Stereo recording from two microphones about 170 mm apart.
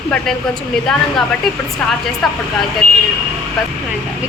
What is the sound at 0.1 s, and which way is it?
A woman's voice, 5° left (ahead or behind).